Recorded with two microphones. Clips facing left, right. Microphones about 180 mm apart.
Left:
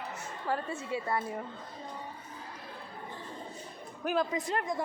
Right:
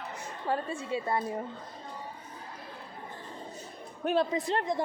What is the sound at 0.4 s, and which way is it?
Speech, 25° right (ahead or behind).